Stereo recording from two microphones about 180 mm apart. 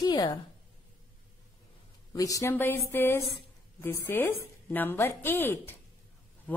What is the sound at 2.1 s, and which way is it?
A woman's voice, 20° left (ahead or behind).